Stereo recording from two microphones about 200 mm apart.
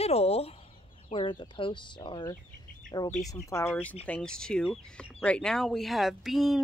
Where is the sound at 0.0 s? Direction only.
30° left (ahead or behind).